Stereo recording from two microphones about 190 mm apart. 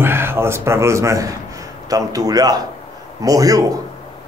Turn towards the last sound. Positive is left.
turn(degrees=-20)  # may be behind; listen again after turning